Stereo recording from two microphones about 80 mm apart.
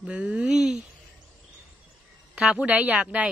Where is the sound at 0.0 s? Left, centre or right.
Centre.